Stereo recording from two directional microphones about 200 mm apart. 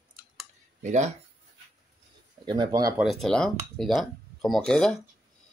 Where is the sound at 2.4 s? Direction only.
20° right (ahead or behind).